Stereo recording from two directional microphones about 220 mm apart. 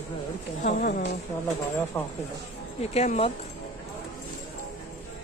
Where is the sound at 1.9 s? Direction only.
10° left (ahead or behind).